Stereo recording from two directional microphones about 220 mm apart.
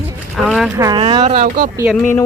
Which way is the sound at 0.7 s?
15° right (ahead or behind).